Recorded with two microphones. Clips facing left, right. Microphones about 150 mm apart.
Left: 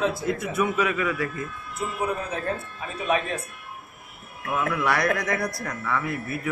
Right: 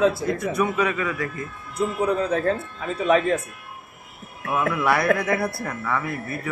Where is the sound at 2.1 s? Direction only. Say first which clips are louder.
Right 7 dB; 70° right (ahead or behind).